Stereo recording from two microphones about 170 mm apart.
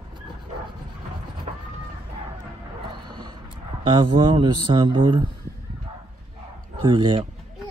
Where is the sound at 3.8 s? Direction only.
30° right (ahead or behind).